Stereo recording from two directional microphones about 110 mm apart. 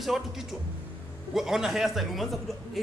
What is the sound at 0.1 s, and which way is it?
Speech, 5° right (ahead or behind).